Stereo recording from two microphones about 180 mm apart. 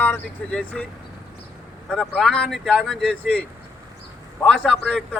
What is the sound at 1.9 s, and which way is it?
A man's voice, 5° left (ahead or behind).